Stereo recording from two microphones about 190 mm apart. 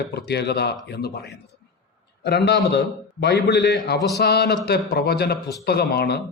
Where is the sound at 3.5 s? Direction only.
60° left (ahead or behind).